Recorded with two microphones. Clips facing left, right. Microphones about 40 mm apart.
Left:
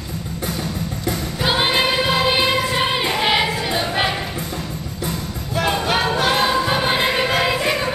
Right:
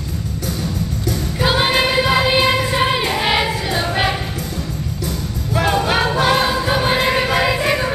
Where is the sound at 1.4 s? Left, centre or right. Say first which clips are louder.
Right 2 dB; centre.